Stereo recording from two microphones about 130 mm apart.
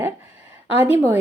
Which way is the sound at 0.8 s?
50° left (ahead or behind).